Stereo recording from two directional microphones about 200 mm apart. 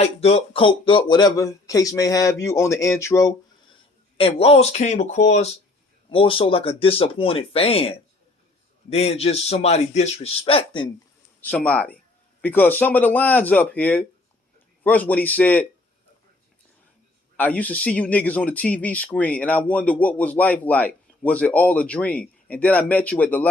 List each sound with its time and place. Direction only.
0.0 s speech: 30° left (ahead or behind); by 3.3 s 15° left (ahead or behind)
4.2 s a man's voice: 30° left (ahead or behind)
11.4 s speech: 5° left (ahead or behind)
17.4 s speech: 5° left (ahead or behind)